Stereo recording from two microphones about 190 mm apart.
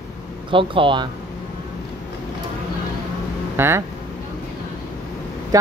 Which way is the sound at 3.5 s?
15° right (ahead or behind).